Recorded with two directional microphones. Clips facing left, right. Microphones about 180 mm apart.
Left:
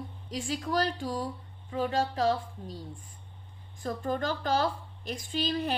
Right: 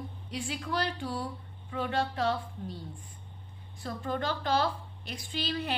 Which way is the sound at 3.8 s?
45° left (ahead or behind).